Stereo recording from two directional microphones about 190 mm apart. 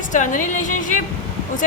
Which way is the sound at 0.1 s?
40° left (ahead or behind).